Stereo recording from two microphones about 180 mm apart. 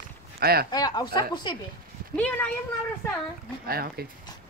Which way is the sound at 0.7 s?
20° left (ahead or behind).